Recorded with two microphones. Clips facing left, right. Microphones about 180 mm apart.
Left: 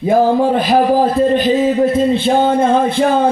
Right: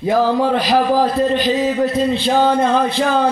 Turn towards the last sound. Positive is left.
turn(degrees=50)  # may be behind; listen again after turning